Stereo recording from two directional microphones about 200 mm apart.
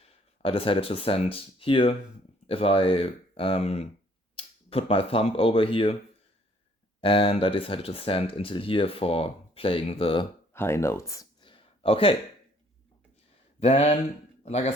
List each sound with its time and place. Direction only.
0.0 s speech: 25° left (ahead or behind)
7.0 s speech: 25° left (ahead or behind)
10.5 s a sound: 10° left (ahead or behind); by 12.1 s 25° left (ahead or behind)
13.6 s speech: 30° left (ahead or behind)